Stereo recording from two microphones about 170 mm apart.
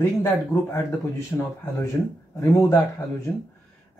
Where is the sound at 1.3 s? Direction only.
10° left (ahead or behind).